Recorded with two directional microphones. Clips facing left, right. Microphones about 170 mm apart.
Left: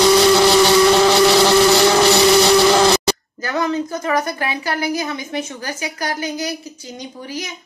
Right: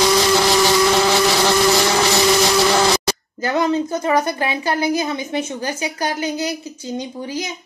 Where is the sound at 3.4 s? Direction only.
20° right (ahead or behind).